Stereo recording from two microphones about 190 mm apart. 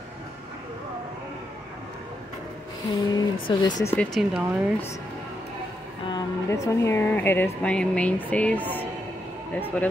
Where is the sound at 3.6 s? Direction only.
20° left (ahead or behind).